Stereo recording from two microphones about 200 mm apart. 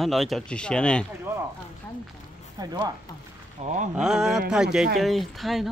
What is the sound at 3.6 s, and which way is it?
Speech, 40° right (ahead or behind).